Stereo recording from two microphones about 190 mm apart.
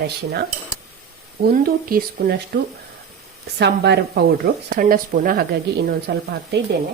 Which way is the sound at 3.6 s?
60° right (ahead or behind).